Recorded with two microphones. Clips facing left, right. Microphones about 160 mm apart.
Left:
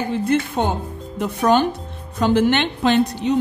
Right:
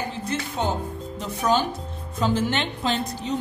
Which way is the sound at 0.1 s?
60° left (ahead or behind).